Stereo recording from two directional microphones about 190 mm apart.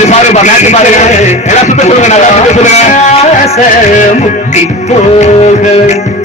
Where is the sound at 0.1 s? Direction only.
35° left (ahead or behind).